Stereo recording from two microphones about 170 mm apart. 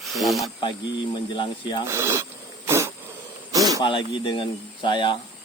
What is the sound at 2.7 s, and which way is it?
Cough, 15° right (ahead or behind).